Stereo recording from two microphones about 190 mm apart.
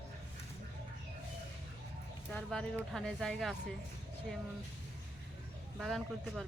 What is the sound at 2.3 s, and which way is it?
Speech, 5° left (ahead or behind).